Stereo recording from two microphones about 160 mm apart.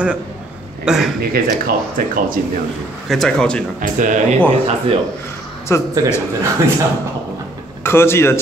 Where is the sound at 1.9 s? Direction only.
60° right (ahead or behind).